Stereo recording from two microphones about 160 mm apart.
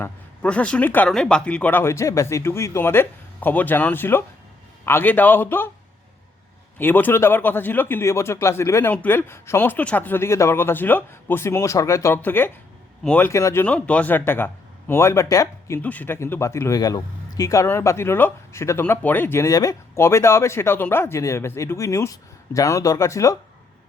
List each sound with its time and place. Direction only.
0.0 s speech: 5° left (ahead or behind)
6.7 s speech: 10° left (ahead or behind)